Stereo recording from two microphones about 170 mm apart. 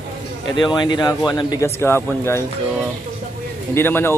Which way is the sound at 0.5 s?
25° left (ahead or behind).